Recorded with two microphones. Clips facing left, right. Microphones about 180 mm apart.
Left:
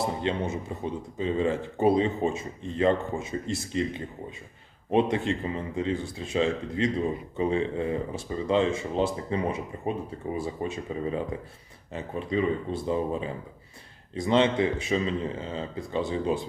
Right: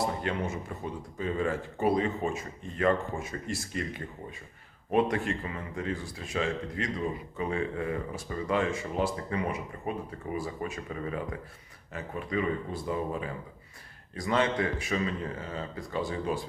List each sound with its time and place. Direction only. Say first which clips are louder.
0.0 s speech: left 3 dB; 25° left (ahead or behind)